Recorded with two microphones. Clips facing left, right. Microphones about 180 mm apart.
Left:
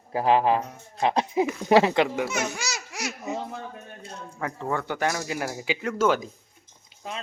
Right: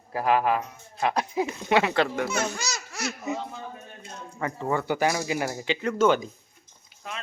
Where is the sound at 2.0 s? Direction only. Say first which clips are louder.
Even; 5° left (ahead or behind).